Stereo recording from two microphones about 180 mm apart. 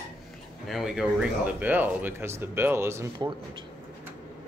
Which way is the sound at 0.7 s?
Centre (ahead or behind).